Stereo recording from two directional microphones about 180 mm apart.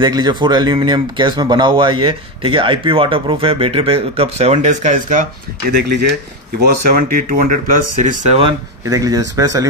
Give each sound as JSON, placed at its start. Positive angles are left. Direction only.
{"t": 0.0, "sound": "speech", "side_deg": -25}
{"t": 5.7, "sound": "speech", "side_deg": -70}
{"t": 6.6, "sound": "speech", "side_deg": -50}
{"t": 8.5, "sound": "speech", "side_deg": -20}